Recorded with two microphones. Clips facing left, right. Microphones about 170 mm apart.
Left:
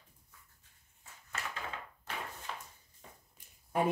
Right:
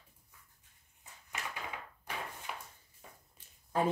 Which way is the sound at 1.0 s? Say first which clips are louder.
Left 1 dB; 15° right (ahead or behind).